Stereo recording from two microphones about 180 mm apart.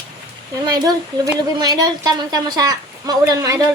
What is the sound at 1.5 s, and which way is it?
A woman's voice, 20° right (ahead or behind).